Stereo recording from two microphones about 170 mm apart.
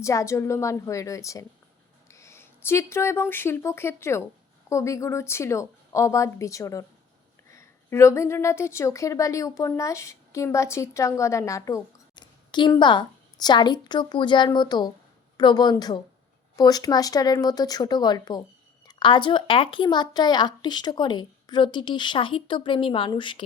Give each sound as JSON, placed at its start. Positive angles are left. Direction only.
{"t": 0.0, "sound": "a woman's voice", "side_deg": 20}